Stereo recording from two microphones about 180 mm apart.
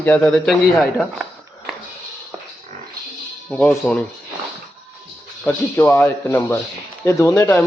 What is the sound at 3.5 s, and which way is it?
Speech, 5° left (ahead or behind).